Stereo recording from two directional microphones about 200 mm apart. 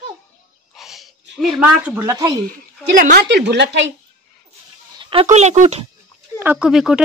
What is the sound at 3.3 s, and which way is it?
Speech, 60° right (ahead or behind).